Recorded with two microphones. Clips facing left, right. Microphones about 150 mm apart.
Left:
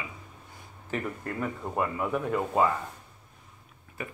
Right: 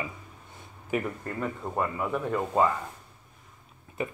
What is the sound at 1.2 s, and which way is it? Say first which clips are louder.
Speech: even; centre (ahead or behind).